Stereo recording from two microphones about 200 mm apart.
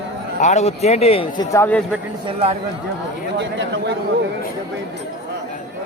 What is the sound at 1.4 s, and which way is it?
Speech, 10° left (ahead or behind).